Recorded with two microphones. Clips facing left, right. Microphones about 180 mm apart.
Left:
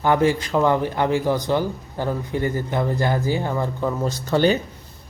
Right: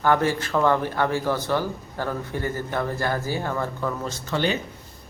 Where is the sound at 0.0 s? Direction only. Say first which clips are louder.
Left 3 dB; 15° left (ahead or behind).